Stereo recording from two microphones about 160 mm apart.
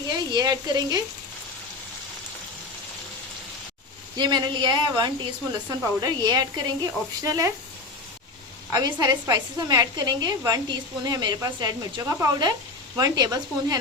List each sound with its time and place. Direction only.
0.1 s speech: 25° right (ahead or behind)
4.2 s a woman's voice: 30° right (ahead or behind)
8.7 s a woman's voice: 25° right (ahead or behind)